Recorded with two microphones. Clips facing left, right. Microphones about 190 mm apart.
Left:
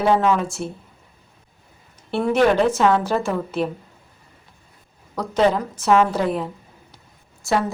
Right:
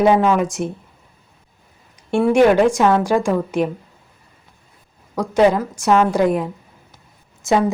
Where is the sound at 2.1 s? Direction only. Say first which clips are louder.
Right 4 dB; 10° right (ahead or behind).